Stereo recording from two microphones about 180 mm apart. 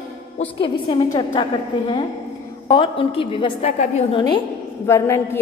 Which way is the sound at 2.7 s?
30° left (ahead or behind).